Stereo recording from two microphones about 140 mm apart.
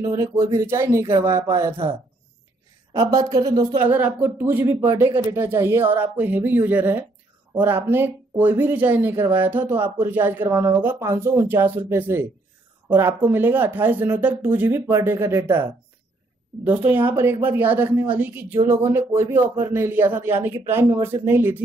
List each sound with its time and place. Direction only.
0.0 s speech: 20° right (ahead or behind)
2.9 s speech: 25° right (ahead or behind)
3.8 s speech: 15° right (ahead or behind)